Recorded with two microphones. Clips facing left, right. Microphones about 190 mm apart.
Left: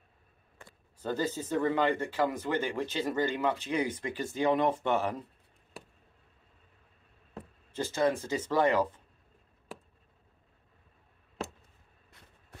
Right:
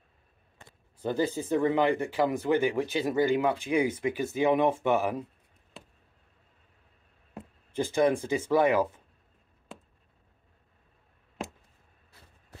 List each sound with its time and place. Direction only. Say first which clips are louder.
0.7 s speech: right 3 dB; 15° right (ahead or behind)
7.3 s speech: right 4 dB; 15° right (ahead or behind)